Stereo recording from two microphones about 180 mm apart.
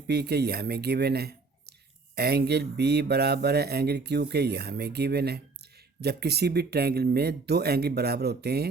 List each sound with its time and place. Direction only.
0.1 s speech: 65° right (ahead or behind)